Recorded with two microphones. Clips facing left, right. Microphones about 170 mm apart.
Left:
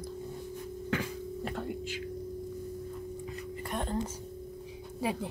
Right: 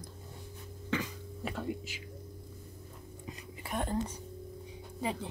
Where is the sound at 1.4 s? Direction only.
5° right (ahead or behind).